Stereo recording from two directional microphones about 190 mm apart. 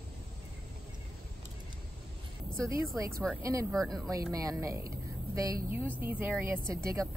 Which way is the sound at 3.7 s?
Centre (ahead or behind).